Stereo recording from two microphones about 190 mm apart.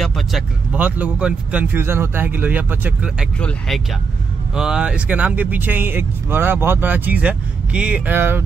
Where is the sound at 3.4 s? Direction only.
5° left (ahead or behind).